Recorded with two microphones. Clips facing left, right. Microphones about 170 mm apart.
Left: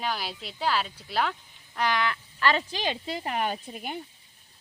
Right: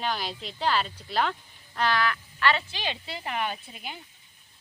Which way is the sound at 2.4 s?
40° left (ahead or behind).